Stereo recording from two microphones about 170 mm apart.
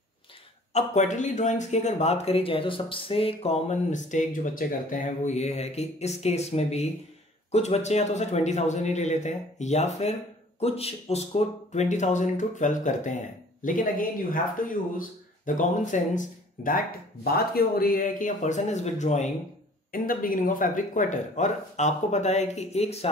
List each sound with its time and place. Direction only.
0.7 s speech: 45° left (ahead or behind)
19.9 s speech: 55° left (ahead or behind); by 23.0 s 40° left (ahead or behind)